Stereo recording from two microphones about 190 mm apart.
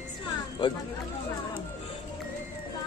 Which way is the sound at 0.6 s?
25° left (ahead or behind).